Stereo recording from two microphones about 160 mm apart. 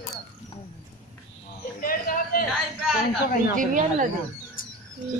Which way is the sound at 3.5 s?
55° right (ahead or behind).